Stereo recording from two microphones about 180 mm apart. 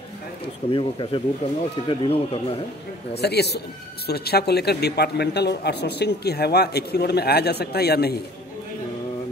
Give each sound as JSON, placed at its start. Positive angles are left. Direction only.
{"t": 0.7, "sound": "speech", "side_deg": 30}
{"t": 3.2, "sound": "speech", "side_deg": 65}